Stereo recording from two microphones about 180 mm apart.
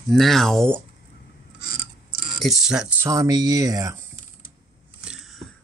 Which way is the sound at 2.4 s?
Centre (ahead or behind).